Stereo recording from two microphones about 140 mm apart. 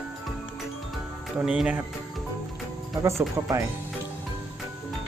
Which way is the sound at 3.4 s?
20° right (ahead or behind).